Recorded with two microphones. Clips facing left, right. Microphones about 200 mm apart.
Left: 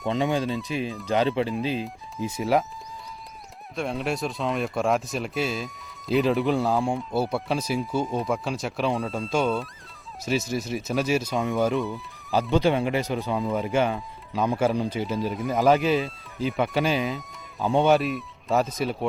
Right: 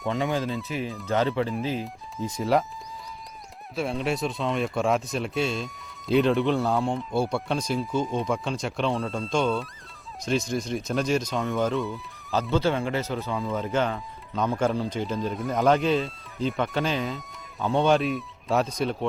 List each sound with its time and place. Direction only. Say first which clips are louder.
0.1 s speech: left 2 dB; 20° left (ahead or behind)
2.1 s speech: even; 5° left (ahead or behind)
3.8 s speech: right 1 dB; centre (ahead or behind)